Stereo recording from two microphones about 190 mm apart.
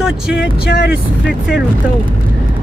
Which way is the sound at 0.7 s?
60° left (ahead or behind).